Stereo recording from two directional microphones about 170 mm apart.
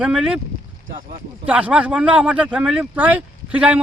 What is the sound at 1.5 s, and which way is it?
Speech, 5° right (ahead or behind).